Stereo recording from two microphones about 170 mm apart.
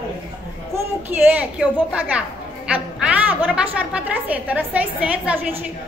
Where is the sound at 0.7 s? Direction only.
10° right (ahead or behind).